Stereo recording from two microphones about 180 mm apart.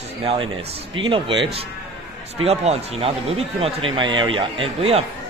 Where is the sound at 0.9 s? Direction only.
30° right (ahead or behind).